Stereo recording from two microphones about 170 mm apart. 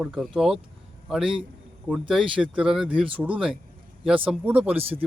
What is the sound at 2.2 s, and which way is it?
Speech, 30° right (ahead or behind).